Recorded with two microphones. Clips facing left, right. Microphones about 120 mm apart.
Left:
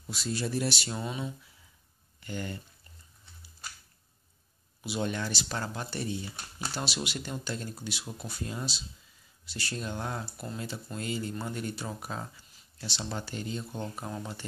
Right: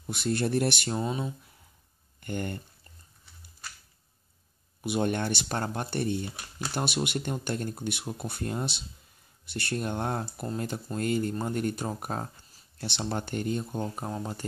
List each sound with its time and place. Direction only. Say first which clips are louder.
0.1 s speech: right 5 dB; 55° right (ahead or behind)
0.9 s speech: right 5 dB; 35° right (ahead or behind)
2.1 s speech: right 4 dB; 55° right (ahead or behind)
4.8 s speech: right 5 dB; 55° right (ahead or behind)
13.8 s speech: right 4 dB; 30° right (ahead or behind)